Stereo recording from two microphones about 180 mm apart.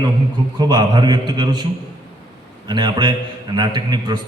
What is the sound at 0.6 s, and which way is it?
A man's voice, 25° right (ahead or behind).